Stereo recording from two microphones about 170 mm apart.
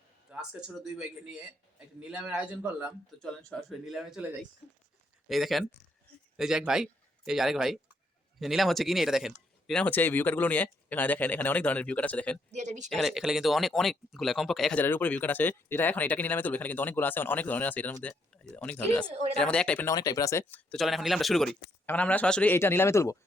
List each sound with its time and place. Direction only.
0.3 s a sound: 5° right (ahead or behind)
0.9 s a man's voice: 5° right (ahead or behind)
12.5 s speech: 45° right (ahead or behind)
12.9 s speech: centre (ahead or behind)
19.9 s speech: 20° left (ahead or behind)
20.5 s speech: 5° left (ahead or behind)